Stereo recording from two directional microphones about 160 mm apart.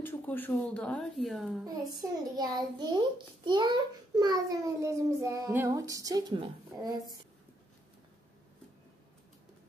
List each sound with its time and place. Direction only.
0.0 s speech: 10° left (ahead or behind)
1.6 s a child's voice: 25° right (ahead or behind)